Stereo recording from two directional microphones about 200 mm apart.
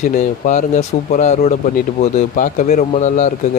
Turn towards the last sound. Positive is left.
turn(degrees=35)  # may be behind; listen again after turning